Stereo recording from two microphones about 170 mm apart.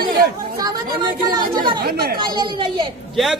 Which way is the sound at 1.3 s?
25° right (ahead or behind).